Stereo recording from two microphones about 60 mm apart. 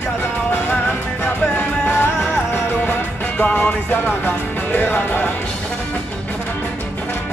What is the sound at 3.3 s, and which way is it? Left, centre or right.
Music, centre.